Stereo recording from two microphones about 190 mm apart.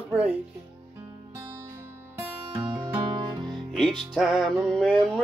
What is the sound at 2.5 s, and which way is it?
Music, 25° right (ahead or behind).